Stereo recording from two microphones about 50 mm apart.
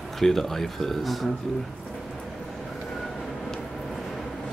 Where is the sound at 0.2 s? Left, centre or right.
Centre.